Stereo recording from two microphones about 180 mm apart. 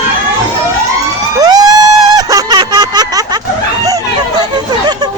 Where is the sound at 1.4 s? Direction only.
20° right (ahead or behind).